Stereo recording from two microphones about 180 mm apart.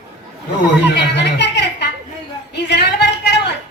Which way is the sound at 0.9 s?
70° left (ahead or behind).